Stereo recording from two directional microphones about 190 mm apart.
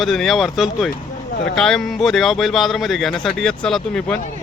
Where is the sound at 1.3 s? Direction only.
55° left (ahead or behind).